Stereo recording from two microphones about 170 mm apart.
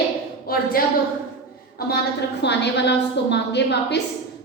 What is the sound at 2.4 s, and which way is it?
A woman's voice, 90° left.